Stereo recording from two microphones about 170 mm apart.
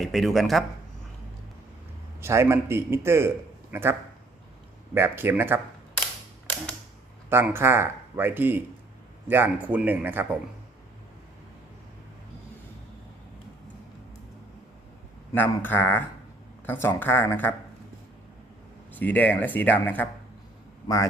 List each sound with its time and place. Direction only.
0.0 s speech: centre (ahead or behind)
2.2 s a man's voice: 15° right (ahead or behind)
4.9 s a man's voice: 15° right (ahead or behind)
7.3 s a man's voice: 15° right (ahead or behind)
15.3 s speech: 15° left (ahead or behind)
18.9 s a man's voice: 10° left (ahead or behind)